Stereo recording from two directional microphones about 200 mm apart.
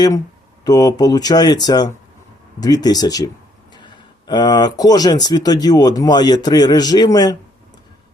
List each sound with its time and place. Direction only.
0.6 s speech: 20° left (ahead or behind)